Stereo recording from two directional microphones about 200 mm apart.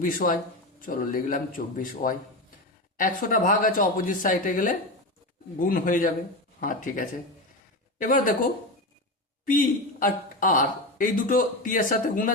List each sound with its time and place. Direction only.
0.0 s speech: 45° left (ahead or behind)
9.5 s speech: 45° left (ahead or behind)